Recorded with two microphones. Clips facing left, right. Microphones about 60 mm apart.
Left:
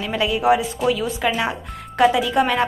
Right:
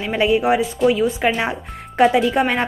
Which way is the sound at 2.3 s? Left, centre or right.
Right.